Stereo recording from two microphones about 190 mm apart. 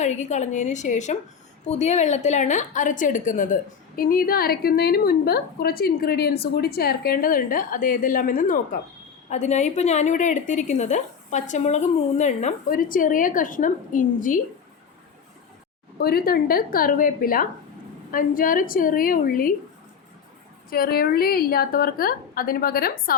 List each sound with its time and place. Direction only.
0.0 s a woman's voice: 40° left (ahead or behind)
16.0 s a woman's voice: 55° left (ahead or behind)
20.7 s a woman's voice: 50° left (ahead or behind)